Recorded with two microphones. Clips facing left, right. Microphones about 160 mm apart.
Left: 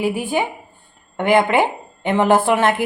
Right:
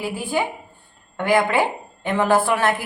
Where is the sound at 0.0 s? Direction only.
15° left (ahead or behind).